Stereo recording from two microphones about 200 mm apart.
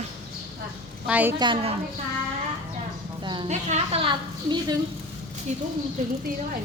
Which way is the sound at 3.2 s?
20° right (ahead or behind).